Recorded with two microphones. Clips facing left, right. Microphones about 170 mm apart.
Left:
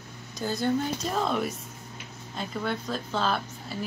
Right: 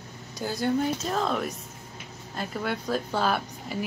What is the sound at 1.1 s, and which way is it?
A woman's voice, centre (ahead or behind).